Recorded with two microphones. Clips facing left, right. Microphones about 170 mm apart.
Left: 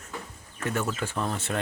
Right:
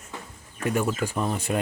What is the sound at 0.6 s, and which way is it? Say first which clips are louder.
Speech: right 4 dB; 10° right (ahead or behind).